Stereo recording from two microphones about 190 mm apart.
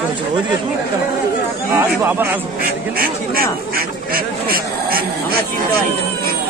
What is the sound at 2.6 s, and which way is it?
Speech, 50° right (ahead or behind).